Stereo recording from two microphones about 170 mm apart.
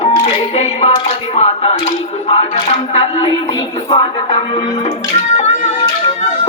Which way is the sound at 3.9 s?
25° left (ahead or behind).